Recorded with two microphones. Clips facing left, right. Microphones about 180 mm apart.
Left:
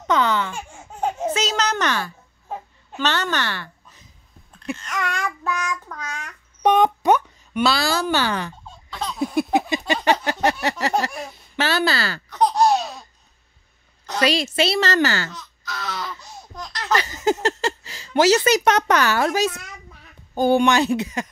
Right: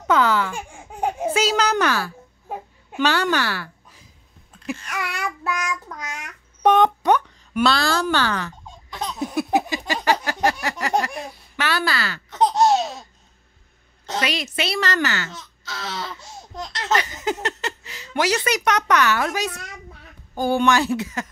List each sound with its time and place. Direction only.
0.0 s baby laughter: 5° right (ahead or behind)
2.9 s a woman's voice: 10° right (ahead or behind)
4.6 s child singing: 10° right (ahead or behind)
6.6 s speech: centre (ahead or behind)
9.7 s a sound: 20° left (ahead or behind)
11.5 s speech: 25° left (ahead or behind)
12.3 s laughter: 25° right (ahead or behind)
14.2 s a woman's voice: 30° left (ahead or behind)
15.3 s speech: 25° right (ahead or behind)
17.0 s speech: 30° left (ahead or behind)